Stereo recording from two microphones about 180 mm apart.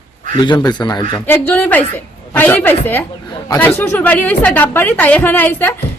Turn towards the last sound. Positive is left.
turn(degrees=10)  # may be behind; listen again after turning